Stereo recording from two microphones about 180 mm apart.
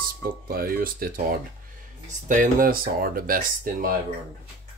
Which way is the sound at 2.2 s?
45° right (ahead or behind).